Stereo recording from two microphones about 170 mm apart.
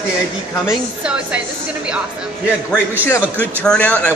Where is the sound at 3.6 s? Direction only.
5° left (ahead or behind).